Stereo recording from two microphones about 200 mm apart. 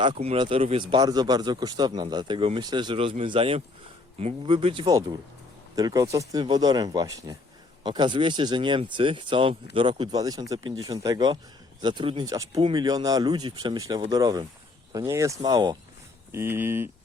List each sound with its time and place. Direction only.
0.0 s speech: 30° right (ahead or behind); by 16.9 s 10° right (ahead or behind)